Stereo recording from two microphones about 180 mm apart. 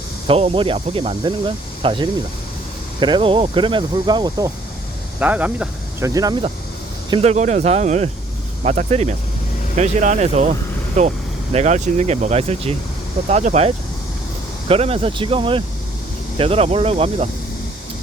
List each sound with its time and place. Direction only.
0.3 s speech: 30° right (ahead or behind)
5.2 s speech: 10° right (ahead or behind); by 6.5 s 25° right (ahead or behind)
7.1 s speech: 35° right (ahead or behind)